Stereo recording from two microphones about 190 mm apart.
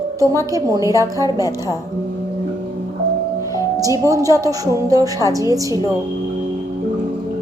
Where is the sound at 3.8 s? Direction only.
15° right (ahead or behind).